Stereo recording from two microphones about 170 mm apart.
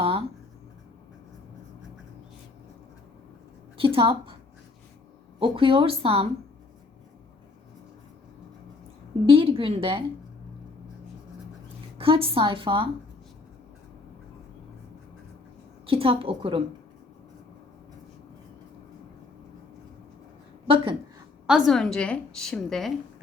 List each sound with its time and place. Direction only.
0.0 s writing: 35° right (ahead or behind)
3.8 s a woman's voice: 30° right (ahead or behind)
5.4 s a woman's voice: 30° right (ahead or behind)
9.2 s a woman's voice: 30° right (ahead or behind)
11.9 s a woman's voice: 30° right (ahead or behind)
15.9 s a woman's voice: 35° right (ahead or behind)
20.7 s a woman's voice: 30° right (ahead or behind)
21.4 s a woman's voice: 5° right (ahead or behind)